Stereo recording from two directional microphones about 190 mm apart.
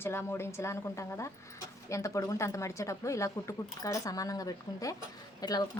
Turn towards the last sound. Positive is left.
turn(degrees=20)  # may be behind; listen again after turning